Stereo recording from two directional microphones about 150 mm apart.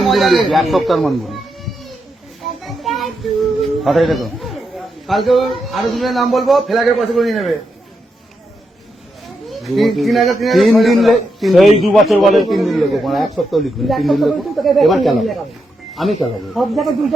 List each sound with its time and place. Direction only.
0.0 s speech: centre (ahead or behind)
2.6 s children playing: centre (ahead or behind)
3.8 s speech: centre (ahead or behind)
9.2 s speech: centre (ahead or behind)